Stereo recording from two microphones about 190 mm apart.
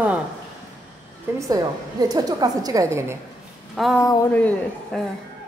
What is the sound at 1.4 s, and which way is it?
A woman's voice, 20° right (ahead or behind).